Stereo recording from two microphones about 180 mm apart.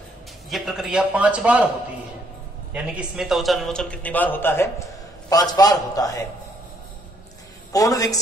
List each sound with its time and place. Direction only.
0.5 s a man's voice: centre (ahead or behind)
2.7 s a man's voice: 5° right (ahead or behind); by 6.2 s 20° left (ahead or behind)
7.7 s a man's voice: 20° left (ahead or behind)